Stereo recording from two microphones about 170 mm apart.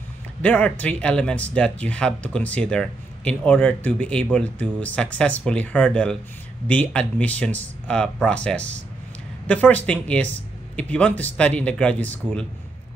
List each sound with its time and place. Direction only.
0.4 s speech: 5° left (ahead or behind)